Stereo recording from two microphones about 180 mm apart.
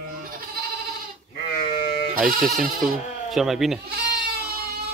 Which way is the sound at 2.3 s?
Centre (ahead or behind).